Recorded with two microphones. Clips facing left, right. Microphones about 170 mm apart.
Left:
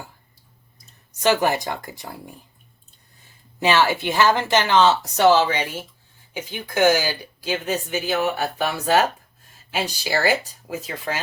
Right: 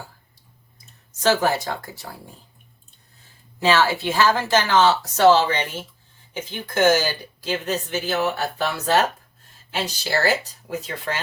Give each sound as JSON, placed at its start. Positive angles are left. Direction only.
{"t": 1.2, "sound": "speech", "side_deg": 15}
{"t": 3.6, "sound": "speech", "side_deg": 15}